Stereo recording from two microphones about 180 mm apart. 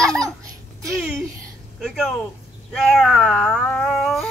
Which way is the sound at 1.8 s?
Centre (ahead or behind).